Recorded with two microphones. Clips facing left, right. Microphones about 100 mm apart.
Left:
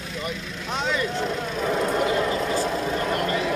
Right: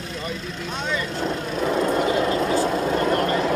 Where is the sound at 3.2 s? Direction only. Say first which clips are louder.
Right 3 dB; 40° right (ahead or behind).